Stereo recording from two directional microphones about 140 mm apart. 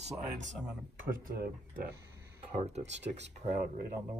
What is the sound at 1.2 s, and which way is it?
Speech, 85° right.